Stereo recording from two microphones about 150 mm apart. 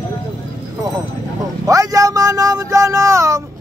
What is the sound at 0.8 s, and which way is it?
Speech, 25° right (ahead or behind).